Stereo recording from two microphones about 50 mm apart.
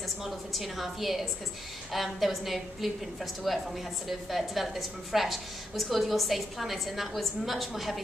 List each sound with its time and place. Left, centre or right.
0.2 s a woman's voice: centre